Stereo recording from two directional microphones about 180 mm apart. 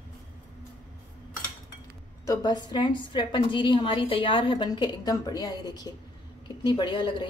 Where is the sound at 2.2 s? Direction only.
20° left (ahead or behind).